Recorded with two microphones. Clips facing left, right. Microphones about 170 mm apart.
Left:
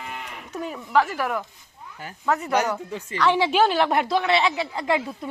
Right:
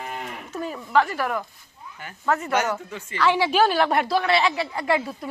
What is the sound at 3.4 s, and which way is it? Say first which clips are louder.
A woman's voice: right 1 dB; 20° left (ahead or behind).